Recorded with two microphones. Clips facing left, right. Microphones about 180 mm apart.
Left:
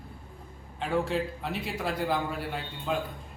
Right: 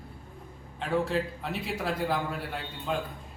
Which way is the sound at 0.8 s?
Centre (ahead or behind).